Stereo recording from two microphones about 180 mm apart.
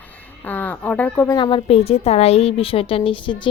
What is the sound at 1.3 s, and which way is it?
A woman's voice, 25° left (ahead or behind).